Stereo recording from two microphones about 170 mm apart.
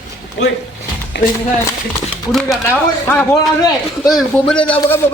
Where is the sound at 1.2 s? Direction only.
90° left.